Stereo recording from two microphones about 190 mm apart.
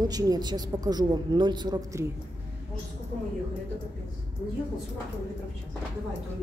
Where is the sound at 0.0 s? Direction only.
20° right (ahead or behind).